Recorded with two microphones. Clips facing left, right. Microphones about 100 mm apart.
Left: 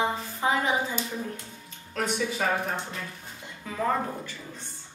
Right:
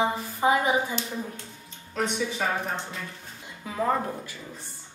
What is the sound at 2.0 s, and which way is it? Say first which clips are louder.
Speech: even; centre (ahead or behind).